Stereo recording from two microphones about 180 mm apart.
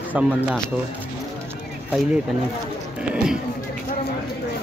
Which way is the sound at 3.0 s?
5° right (ahead or behind).